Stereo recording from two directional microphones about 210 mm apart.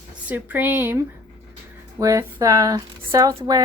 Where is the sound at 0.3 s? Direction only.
10° right (ahead or behind).